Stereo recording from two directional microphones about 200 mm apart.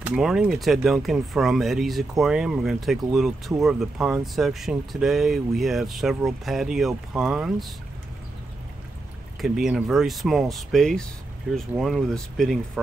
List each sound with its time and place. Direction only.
0.0 s speech: 5° right (ahead or behind)
9.4 s speech: centre (ahead or behind)